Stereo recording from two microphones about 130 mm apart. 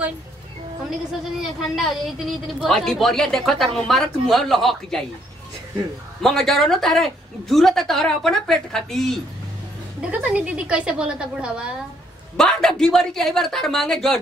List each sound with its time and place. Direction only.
1.8 s a woman's voice: centre (ahead or behind)
6.2 s a woman's voice: centre (ahead or behind)
10.0 s a woman's voice: 10° right (ahead or behind)
12.4 s a woman's voice: 5° left (ahead or behind)